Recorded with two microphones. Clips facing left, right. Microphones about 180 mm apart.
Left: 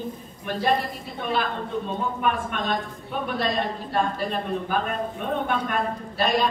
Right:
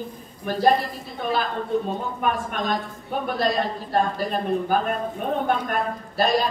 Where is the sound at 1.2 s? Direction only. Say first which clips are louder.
Right 1 dB; 40° right (ahead or behind).